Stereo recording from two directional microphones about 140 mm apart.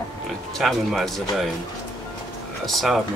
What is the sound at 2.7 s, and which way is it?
Speech, centre (ahead or behind).